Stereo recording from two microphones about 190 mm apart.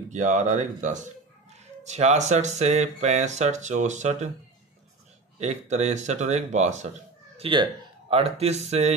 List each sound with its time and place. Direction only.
0.1 s speech: 40° right (ahead or behind)
5.4 s speech: 35° right (ahead or behind)
7.3 s speech: 25° right (ahead or behind)